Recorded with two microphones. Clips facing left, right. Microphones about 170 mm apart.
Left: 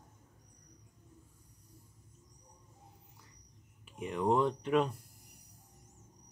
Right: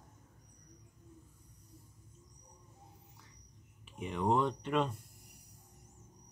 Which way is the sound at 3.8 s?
Centre (ahead or behind).